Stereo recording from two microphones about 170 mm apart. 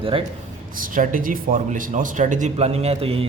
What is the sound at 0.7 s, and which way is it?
A man's voice, 55° right (ahead or behind).